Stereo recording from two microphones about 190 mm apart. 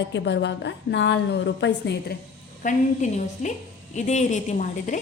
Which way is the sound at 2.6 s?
40° left (ahead or behind).